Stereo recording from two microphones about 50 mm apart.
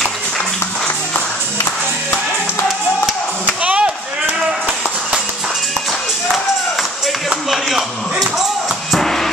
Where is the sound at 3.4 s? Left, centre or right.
Right.